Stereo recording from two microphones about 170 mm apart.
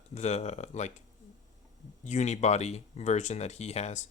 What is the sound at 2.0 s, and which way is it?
Speech, 45° left (ahead or behind).